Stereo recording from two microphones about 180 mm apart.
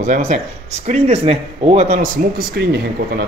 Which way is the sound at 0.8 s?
35° right (ahead or behind).